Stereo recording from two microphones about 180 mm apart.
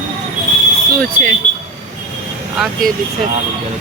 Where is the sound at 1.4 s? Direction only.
40° left (ahead or behind).